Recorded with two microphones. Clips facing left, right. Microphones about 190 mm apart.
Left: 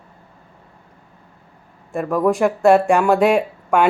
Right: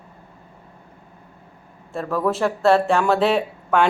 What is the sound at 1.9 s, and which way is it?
Speech, 15° left (ahead or behind).